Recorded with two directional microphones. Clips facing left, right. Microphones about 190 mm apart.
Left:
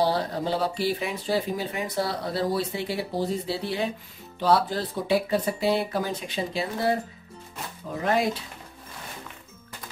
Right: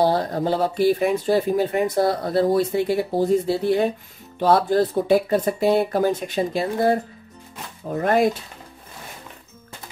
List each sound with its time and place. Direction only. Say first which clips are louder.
0.0 s speech: right 5 dB; 45° right (ahead or behind)
8.0 s speech: right 6 dB; 55° right (ahead or behind)